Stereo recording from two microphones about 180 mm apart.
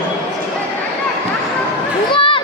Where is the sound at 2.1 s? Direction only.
30° left (ahead or behind).